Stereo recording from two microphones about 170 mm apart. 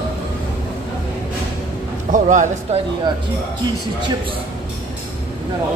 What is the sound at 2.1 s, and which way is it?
Speech, 45° right (ahead or behind).